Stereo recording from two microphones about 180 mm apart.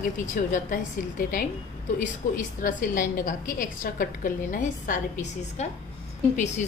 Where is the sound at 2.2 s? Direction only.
40° left (ahead or behind).